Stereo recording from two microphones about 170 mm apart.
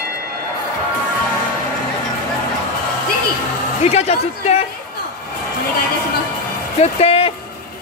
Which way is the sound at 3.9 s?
40° left (ahead or behind).